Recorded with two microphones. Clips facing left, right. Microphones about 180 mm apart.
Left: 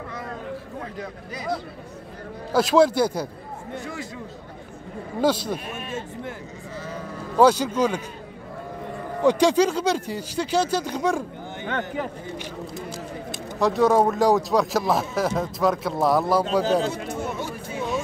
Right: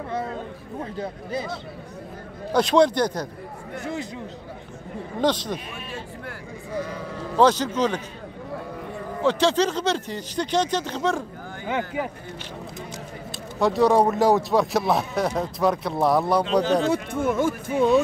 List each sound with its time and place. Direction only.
0.9 s speech: 30° right (ahead or behind)
2.5 s speech: 5° left (ahead or behind)
3.8 s speech: 20° right (ahead or behind)
5.2 s speech: 10° left (ahead or behind)
6.7 s speech: 10° right (ahead or behind)
7.3 s speech: 10° left (ahead or behind)
9.2 s speech: 15° left (ahead or behind)
13.6 s speech: centre (ahead or behind)
16.9 s speech: 55° right (ahead or behind)